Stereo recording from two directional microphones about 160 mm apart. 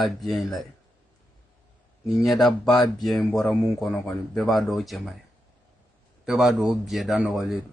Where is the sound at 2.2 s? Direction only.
Centre (ahead or behind).